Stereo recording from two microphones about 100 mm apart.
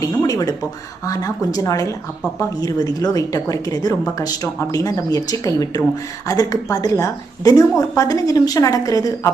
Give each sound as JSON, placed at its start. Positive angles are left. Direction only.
{"t": 0.0, "sound": "a woman's voice", "side_deg": 40}